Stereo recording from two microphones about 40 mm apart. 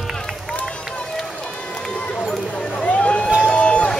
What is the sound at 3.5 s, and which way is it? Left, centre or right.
Run, left.